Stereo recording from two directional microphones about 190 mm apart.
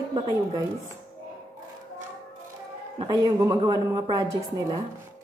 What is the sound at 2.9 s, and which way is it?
A woman's voice, 20° right (ahead or behind).